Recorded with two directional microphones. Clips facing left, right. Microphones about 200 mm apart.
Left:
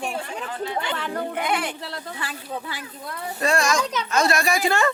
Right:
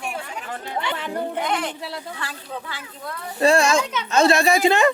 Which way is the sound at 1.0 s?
20° right (ahead or behind).